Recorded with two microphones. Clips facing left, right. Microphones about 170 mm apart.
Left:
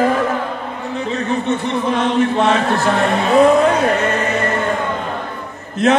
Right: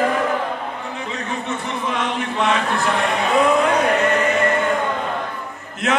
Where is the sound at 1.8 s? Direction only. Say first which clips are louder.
Left 8 dB; 40° left (ahead or behind).